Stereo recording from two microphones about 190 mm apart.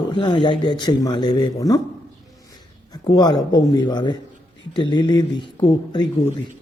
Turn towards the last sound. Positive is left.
turn(degrees=25)  # may be behind; listen again after turning